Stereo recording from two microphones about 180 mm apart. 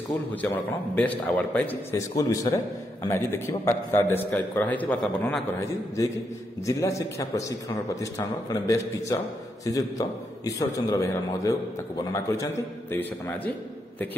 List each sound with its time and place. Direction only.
0.9 s a man's voice: 10° left (ahead or behind)
6.6 s a man's voice: 15° left (ahead or behind)